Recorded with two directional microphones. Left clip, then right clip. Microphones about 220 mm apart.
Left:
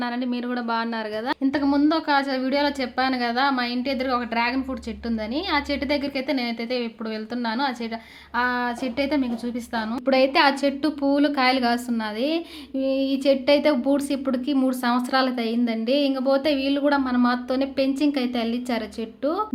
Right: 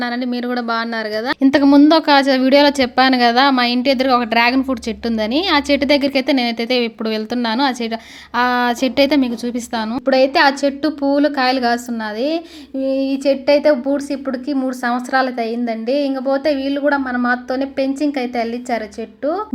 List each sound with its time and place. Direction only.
0.0 s speech: 20° right (ahead or behind)
1.4 s a woman's voice: 40° right (ahead or behind)
10.1 s a woman's voice: 15° right (ahead or behind)
12.8 s a woman's voice: 5° right (ahead or behind)